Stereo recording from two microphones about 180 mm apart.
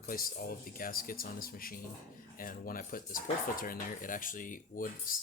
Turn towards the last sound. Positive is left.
turn(degrees=50)  # may be behind; listen again after turning